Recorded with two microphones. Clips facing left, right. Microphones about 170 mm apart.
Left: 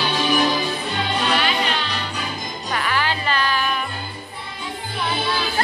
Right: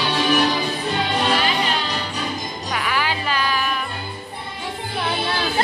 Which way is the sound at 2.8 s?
10° right (ahead or behind).